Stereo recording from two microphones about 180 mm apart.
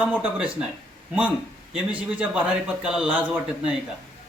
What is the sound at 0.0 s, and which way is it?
Speech, 5° right (ahead or behind).